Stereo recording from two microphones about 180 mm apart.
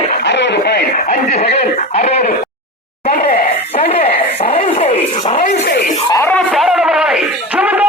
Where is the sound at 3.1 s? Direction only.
50° left (ahead or behind).